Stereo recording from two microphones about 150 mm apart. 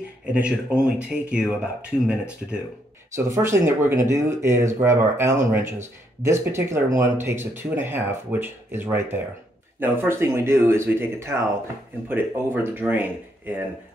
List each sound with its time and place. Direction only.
0.2 s speech: 5° right (ahead or behind)
3.1 s speech: 20° right (ahead or behind)
12.7 s speech: 15° right (ahead or behind)